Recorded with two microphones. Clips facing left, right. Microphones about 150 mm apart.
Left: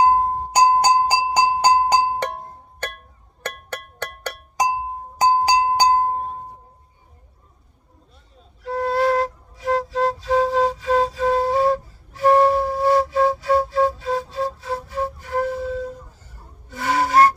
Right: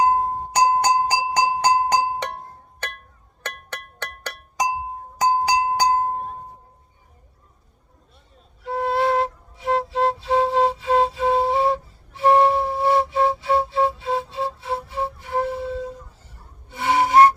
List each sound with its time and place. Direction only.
0.6 s music: 35° left (ahead or behind)
3.4 s music: 5° left (ahead or behind)
4.5 s a sound: 35° left (ahead or behind)
5.3 s music: 35° left (ahead or behind)
8.6 s flute: 25° right (ahead or behind)
16.6 s a sound: 25° right (ahead or behind)